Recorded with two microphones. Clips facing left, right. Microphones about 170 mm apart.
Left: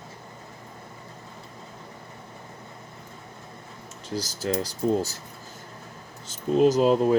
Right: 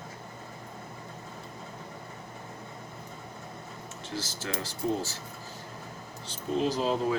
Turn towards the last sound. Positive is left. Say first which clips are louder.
# left 8 dB
turn(degrees=50)  # may be behind; listen again after turning